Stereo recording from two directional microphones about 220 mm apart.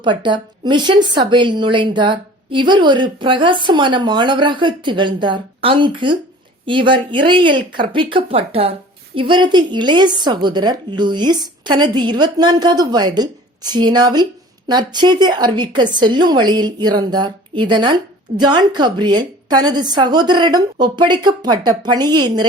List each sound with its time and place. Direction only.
0.0 s a woman's voice: 20° right (ahead or behind)